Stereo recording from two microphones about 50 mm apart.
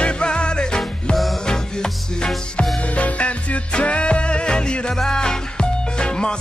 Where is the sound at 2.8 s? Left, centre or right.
Left.